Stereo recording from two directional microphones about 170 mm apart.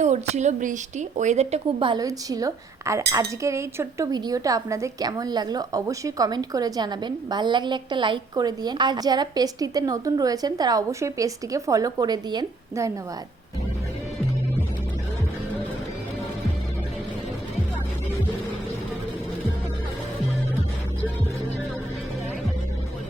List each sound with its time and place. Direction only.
0.0 s a woman's voice: 45° right (ahead or behind); by 12.9 s 20° right (ahead or behind)